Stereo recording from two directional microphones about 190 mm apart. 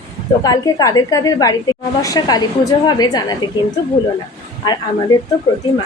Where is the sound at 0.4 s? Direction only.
20° left (ahead or behind).